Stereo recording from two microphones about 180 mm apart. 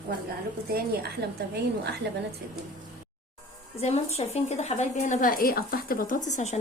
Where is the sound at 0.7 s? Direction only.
60° right (ahead or behind).